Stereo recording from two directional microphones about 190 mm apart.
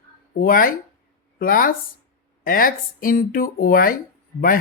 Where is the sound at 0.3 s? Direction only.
50° left (ahead or behind).